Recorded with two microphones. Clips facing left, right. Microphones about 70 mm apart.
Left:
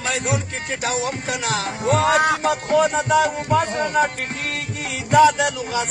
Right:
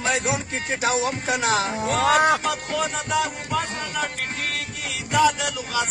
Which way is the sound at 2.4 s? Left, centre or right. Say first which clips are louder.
Left 7 dB; left.